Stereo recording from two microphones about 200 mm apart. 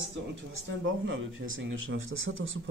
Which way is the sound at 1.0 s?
75° right (ahead or behind).